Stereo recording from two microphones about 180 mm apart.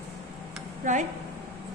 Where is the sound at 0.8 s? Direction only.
45° right (ahead or behind).